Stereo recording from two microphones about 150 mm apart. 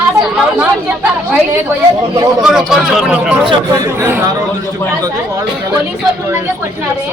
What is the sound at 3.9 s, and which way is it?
Speech, 15° right (ahead or behind).